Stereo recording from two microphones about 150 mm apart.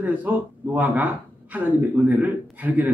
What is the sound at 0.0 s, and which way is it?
A man's voice, 10° right (ahead or behind).